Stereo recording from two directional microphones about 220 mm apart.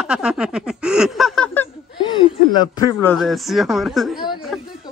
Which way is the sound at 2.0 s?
20° left (ahead or behind).